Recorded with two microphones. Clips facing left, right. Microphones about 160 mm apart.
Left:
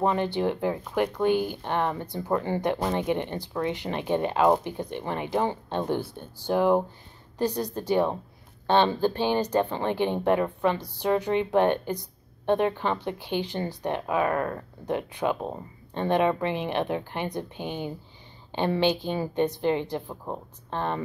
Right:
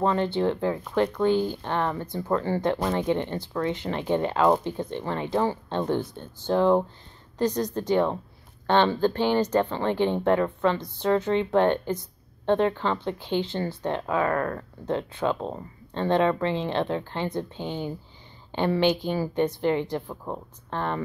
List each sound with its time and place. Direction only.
0.0 s speech: 15° left (ahead or behind)